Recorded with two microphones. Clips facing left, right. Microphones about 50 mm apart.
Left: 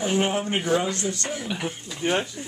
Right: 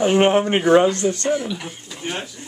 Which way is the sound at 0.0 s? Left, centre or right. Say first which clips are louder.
Right 8 dB; right.